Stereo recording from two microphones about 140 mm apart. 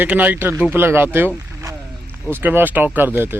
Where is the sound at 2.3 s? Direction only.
15° right (ahead or behind).